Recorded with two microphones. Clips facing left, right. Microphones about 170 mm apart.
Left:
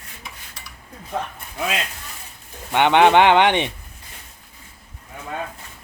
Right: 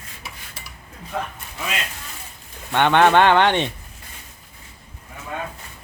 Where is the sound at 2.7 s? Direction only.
15° left (ahead or behind).